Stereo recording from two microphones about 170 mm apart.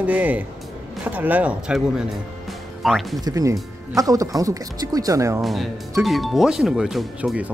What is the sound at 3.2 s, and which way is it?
Speech, 20° right (ahead or behind).